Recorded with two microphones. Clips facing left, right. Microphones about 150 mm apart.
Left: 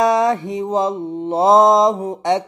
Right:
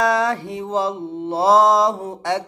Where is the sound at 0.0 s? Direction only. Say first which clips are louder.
Left 4 dB; 20° left (ahead or behind).